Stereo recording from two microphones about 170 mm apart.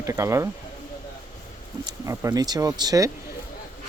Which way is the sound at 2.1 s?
20° right (ahead or behind).